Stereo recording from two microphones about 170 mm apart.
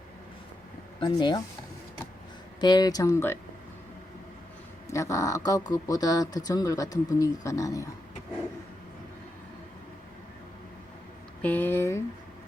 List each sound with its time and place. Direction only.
0.9 s speech: 30° left (ahead or behind)
2.6 s speech: 25° left (ahead or behind)
4.9 s speech: 20° left (ahead or behind)
11.4 s a sound: 10° left (ahead or behind)